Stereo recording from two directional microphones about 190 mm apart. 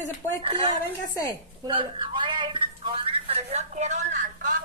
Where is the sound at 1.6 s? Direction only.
25° right (ahead or behind).